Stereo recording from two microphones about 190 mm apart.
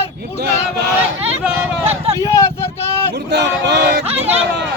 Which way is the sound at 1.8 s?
35° right (ahead or behind).